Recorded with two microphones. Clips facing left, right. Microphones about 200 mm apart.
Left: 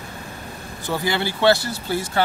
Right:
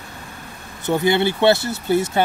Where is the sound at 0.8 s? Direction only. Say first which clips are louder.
Right 6 dB; 20° right (ahead or behind).